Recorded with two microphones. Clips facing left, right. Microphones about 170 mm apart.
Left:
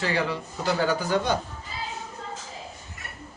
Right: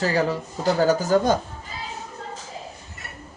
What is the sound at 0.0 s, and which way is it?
A woman's voice, 40° right (ahead or behind).